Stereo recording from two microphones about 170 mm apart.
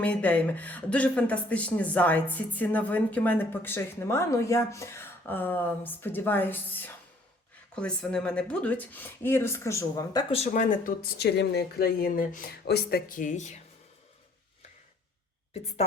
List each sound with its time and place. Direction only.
0.0 s a woman's voice: 10° left (ahead or behind)
10.3 s a woman's voice: 40° left (ahead or behind)
12.6 s speech: 70° left (ahead or behind); by 13.6 s 45° left (ahead or behind)